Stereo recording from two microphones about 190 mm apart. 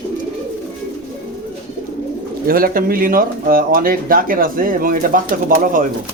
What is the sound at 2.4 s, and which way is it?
Speech, 50° right (ahead or behind).